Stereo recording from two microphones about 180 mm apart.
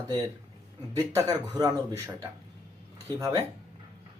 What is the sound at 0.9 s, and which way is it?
Speech, 20° right (ahead or behind).